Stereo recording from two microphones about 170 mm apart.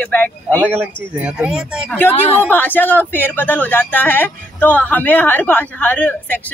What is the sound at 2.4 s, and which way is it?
Speech, 10° left (ahead or behind).